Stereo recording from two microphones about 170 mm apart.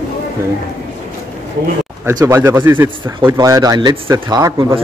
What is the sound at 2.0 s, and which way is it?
A man's voice, 15° right (ahead or behind).